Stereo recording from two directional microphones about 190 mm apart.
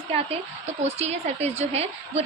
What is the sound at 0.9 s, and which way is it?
Speech, 35° right (ahead or behind).